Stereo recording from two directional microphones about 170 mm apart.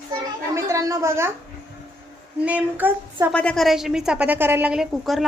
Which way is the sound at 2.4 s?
10° right (ahead or behind).